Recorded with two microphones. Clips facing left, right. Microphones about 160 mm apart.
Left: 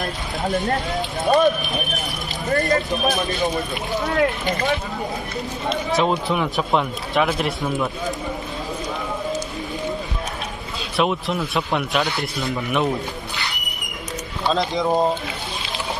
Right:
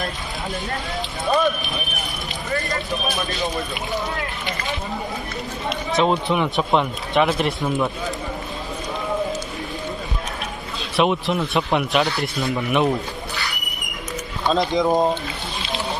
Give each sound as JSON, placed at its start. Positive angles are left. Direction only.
{"t": 2.5, "sound": "speech", "side_deg": 45}
{"t": 4.2, "sound": "speech", "side_deg": 45}
{"t": 5.9, "sound": "speech", "side_deg": 0}
{"t": 11.0, "sound": "speech", "side_deg": 0}
{"t": 14.5, "sound": "speech", "side_deg": 0}